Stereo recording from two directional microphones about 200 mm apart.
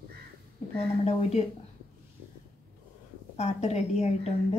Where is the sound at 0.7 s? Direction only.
30° left (ahead or behind).